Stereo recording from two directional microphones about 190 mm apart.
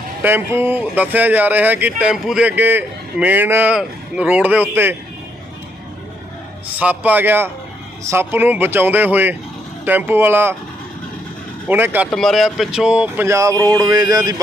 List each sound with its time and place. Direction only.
0.2 s speech: 10° right (ahead or behind)
6.8 s speech: 10° right (ahead or behind)
11.6 s speech: 10° right (ahead or behind)
12.1 s speech: centre (ahead or behind); by 14.3 s 20° right (ahead or behind)